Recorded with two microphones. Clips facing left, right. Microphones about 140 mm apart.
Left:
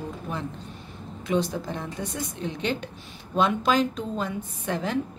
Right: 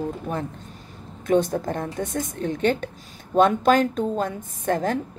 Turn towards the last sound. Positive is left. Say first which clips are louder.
# right 6 dB
turn(degrees=-45)  # may be behind; listen again after turning